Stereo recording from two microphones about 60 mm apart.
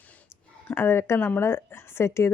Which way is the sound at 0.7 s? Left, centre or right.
Left.